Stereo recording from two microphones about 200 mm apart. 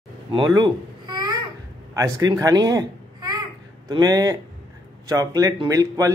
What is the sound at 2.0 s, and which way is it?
Speech, 15° right (ahead or behind).